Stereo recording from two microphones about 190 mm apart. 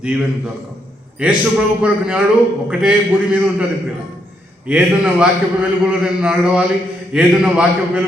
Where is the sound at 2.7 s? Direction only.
5° right (ahead or behind).